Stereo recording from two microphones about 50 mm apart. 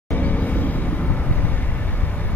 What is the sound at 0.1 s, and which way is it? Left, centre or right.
Vehicle, left.